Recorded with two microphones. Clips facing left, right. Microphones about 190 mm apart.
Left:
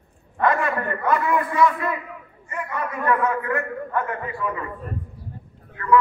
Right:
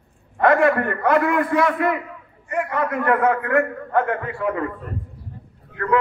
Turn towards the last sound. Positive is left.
turn(degrees=-70)  # may be behind; listen again after turning